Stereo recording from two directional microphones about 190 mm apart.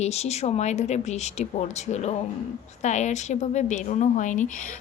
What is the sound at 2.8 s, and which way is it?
A woman's voice, 40° left (ahead or behind).